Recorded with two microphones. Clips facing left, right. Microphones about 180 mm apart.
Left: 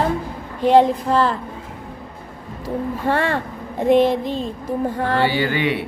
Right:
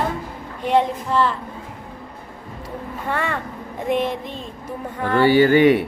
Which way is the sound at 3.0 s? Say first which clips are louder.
Left 4 dB; 30° left (ahead or behind).